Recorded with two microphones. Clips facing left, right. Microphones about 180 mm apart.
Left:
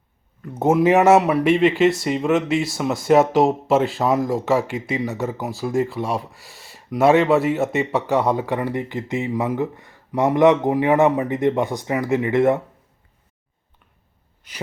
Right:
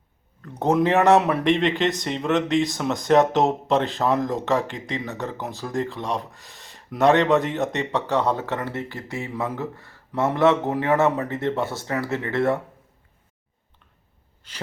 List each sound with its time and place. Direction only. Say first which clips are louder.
0.4 s speech: left 4 dB; 5° left (ahead or behind)